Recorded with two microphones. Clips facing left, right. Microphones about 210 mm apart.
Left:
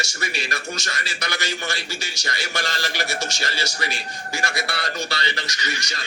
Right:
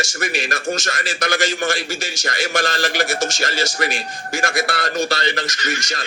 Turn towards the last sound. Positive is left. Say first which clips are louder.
# right 5 dB
turn(degrees=-45)  # may be behind; listen again after turning